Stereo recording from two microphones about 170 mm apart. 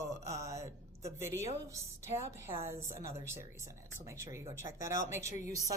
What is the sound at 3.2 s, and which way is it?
Speech, 15° right (ahead or behind).